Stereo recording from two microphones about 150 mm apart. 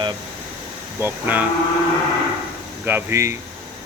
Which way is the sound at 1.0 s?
10° right (ahead or behind).